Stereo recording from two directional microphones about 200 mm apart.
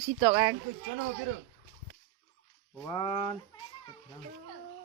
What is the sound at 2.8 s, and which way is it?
Speech, 20° left (ahead or behind).